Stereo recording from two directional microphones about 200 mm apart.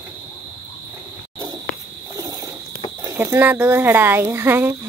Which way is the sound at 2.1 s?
15° right (ahead or behind).